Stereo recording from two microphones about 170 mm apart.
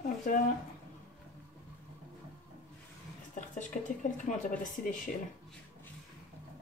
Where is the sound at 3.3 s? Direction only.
50° left (ahead or behind).